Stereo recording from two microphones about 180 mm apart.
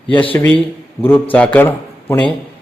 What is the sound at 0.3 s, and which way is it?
Speech, 10° left (ahead or behind).